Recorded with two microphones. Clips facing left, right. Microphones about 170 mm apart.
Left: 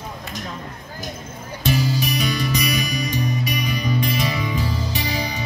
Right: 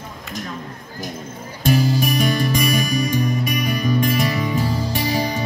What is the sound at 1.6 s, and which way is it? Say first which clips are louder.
Music: right 4 dB; 50° right (ahead or behind).